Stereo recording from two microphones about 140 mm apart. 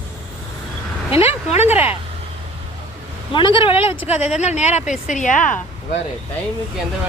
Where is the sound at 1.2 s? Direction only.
50° left (ahead or behind).